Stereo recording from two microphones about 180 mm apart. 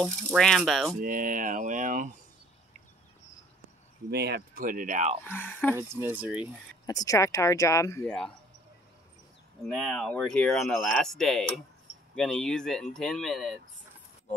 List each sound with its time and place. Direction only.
0.3 s speech: centre (ahead or behind)
1.0 s speech: 50° right (ahead or behind)
4.1 s speech: 65° right (ahead or behind); by 5.2 s 40° right (ahead or behind)
5.2 s speech: 10° left (ahead or behind)
5.8 s speech: 15° right (ahead or behind)
6.9 s speech: 20° left (ahead or behind)
8.0 s speech: 5° left (ahead or behind)
9.6 s speech: 5° left (ahead or behind)